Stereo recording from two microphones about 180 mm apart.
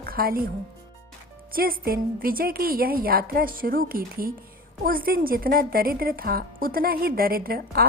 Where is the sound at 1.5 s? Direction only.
55° right (ahead or behind).